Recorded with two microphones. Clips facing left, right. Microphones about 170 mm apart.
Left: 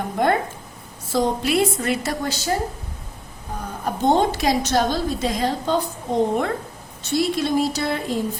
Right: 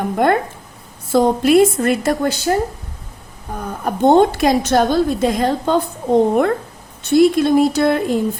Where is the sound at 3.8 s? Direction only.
55° right (ahead or behind).